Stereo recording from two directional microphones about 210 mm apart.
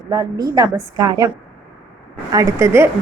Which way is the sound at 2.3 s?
15° right (ahead or behind).